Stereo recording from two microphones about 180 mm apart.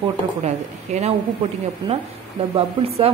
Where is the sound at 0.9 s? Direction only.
40° right (ahead or behind).